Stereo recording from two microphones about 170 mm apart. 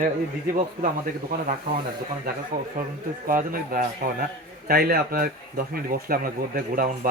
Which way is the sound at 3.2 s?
55° right (ahead or behind).